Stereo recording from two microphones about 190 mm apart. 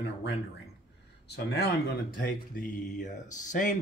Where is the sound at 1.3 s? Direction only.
60° left (ahead or behind).